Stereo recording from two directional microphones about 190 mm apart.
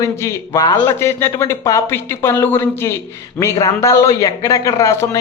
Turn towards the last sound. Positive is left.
turn(degrees=15)  # may be behind; listen again after turning